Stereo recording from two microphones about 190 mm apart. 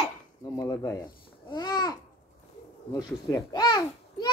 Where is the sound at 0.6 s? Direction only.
15° left (ahead or behind).